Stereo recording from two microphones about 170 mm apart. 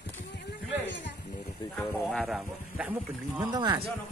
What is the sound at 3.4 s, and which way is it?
Speech, 25° right (ahead or behind).